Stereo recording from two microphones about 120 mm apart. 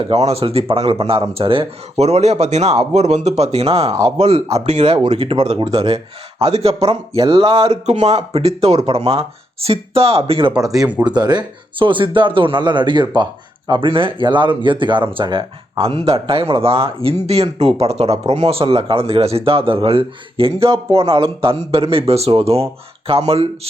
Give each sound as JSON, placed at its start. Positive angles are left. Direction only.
{"t": 0.0, "sound": "speech", "side_deg": -60}
{"t": 4.9, "sound": "speech", "side_deg": -50}
{"t": 10.5, "sound": "speech", "side_deg": -5}
{"t": 11.0, "sound": "speech", "side_deg": -35}